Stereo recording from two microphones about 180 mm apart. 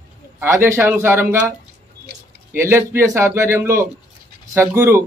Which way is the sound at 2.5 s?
15° right (ahead or behind).